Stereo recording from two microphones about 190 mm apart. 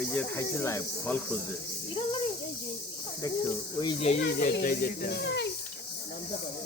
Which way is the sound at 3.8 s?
30° left (ahead or behind).